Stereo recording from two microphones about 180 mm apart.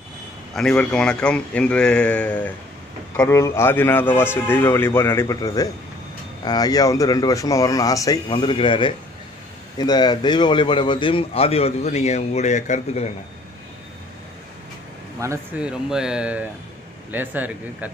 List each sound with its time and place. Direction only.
0.6 s a man's voice: 5° left (ahead or behind); by 13.1 s 40° left (ahead or behind)
15.2 s speech: 15° right (ahead or behind)
15.6 s a man's voice: 5° right (ahead or behind)